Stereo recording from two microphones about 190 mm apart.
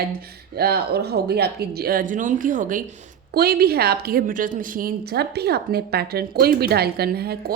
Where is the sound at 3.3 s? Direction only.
55° right (ahead or behind).